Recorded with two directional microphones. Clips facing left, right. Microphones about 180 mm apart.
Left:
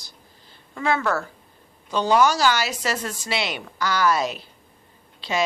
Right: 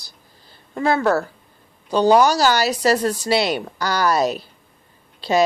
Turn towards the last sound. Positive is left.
turn(degrees=-40)  # may be behind; listen again after turning